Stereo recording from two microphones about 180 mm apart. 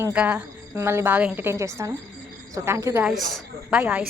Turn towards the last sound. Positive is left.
turn(degrees=-10)  # may be behind; listen again after turning